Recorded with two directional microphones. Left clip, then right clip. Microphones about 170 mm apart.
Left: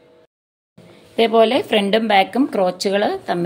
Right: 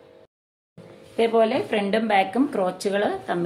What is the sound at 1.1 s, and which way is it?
A woman's voice, 60° left (ahead or behind).